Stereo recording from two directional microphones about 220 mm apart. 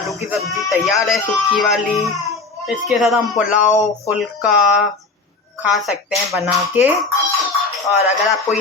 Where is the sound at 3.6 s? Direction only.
35° left (ahead or behind).